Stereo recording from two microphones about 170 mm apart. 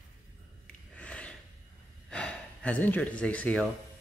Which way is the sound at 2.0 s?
5° left (ahead or behind).